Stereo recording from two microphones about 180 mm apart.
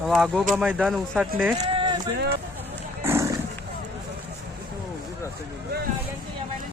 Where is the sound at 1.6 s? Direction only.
25° right (ahead or behind).